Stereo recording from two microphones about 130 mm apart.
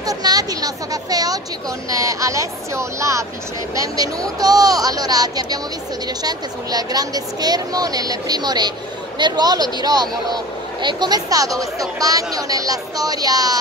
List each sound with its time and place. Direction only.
0.0 s speech: 30° right (ahead or behind)